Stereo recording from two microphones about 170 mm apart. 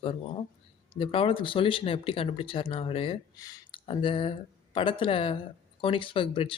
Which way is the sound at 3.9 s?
30° left (ahead or behind).